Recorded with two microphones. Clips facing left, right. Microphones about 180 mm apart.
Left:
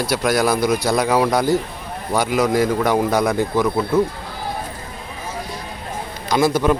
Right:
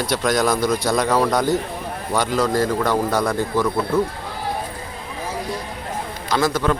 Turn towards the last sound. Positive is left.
turn(degrees=10)  # may be behind; listen again after turning